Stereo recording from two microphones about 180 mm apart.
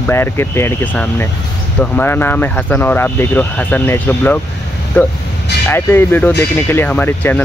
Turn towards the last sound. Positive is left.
turn(degrees=10)  # may be behind; listen again after turning